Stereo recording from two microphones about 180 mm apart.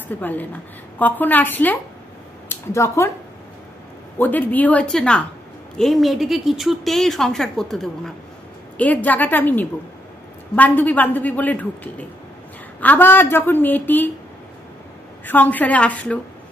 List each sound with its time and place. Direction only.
0.2 s a man's voice: 10° left (ahead or behind)
4.2 s a man's voice: 10° left (ahead or behind)
15.2 s a man's voice: 10° left (ahead or behind)